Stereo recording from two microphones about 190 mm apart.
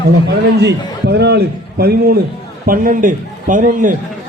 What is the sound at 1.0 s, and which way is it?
A man's voice, 60° right (ahead or behind).